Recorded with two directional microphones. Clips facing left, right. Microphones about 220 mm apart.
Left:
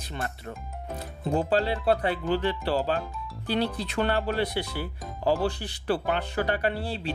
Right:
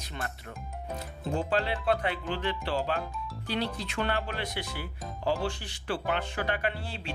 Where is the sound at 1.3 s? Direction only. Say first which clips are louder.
Left 5 dB; 35° left (ahead or behind).